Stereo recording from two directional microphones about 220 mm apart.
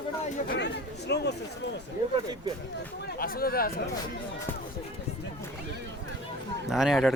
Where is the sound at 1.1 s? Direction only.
50° left (ahead or behind).